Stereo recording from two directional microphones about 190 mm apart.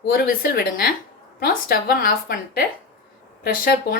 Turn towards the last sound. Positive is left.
turn(degrees=50)  # may be behind; listen again after turning